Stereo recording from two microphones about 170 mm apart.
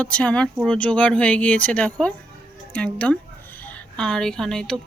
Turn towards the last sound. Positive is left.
turn(degrees=5)  # may be behind; listen again after turning